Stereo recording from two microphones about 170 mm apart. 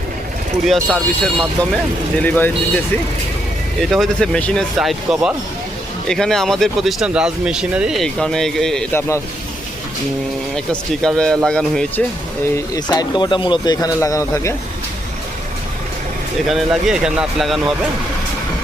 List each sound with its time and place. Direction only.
0.6 s speech: centre (ahead or behind)
3.8 s speech: centre (ahead or behind)
10.5 s speech: 5° left (ahead or behind)
12.5 s speech: 20° left (ahead or behind)
16.5 s speech: centre (ahead or behind)